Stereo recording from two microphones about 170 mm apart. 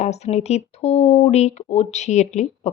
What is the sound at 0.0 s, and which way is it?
Speech, 40° left (ahead or behind).